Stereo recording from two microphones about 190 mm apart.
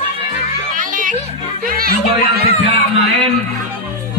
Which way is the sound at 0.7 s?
45° right (ahead or behind).